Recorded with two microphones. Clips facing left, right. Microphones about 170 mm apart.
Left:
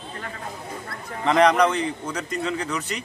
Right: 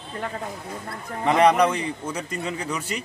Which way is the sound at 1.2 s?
10° right (ahead or behind).